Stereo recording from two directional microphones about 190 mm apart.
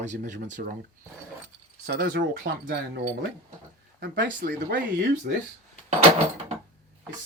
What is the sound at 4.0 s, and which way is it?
Speech, 55° right (ahead or behind).